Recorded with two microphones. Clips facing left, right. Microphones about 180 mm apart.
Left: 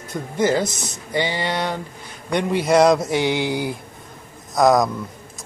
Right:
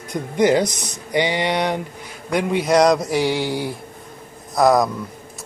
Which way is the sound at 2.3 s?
Centre (ahead or behind).